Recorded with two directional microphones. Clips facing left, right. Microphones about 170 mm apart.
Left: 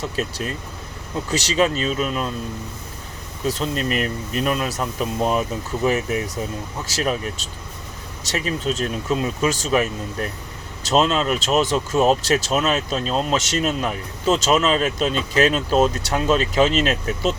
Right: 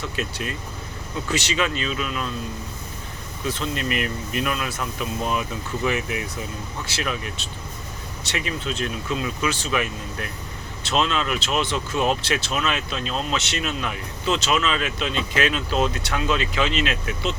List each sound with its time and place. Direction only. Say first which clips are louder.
0.0 s speech: left 3 dB; 35° left (ahead or behind)
3.4 s speech: left 4 dB; 40° left (ahead or behind)